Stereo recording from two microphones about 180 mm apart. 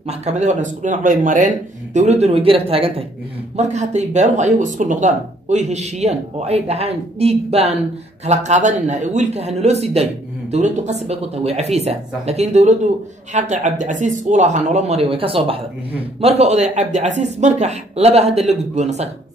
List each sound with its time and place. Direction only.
0.1 s speech: 40° right (ahead or behind)